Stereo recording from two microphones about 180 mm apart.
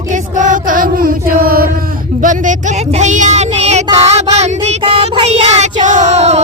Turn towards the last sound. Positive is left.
turn(degrees=-35)  # may be behind; listen again after turning